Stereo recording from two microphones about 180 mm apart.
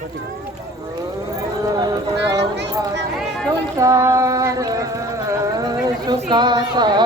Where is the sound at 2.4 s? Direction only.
75° right (ahead or behind).